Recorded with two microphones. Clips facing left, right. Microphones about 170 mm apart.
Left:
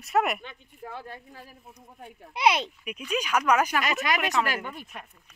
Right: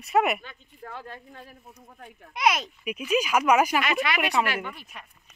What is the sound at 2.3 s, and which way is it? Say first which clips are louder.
Speech: left 1 dB; 30° left (ahead or behind).